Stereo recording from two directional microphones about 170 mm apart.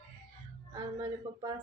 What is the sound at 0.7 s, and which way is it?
Speech, 25° right (ahead or behind).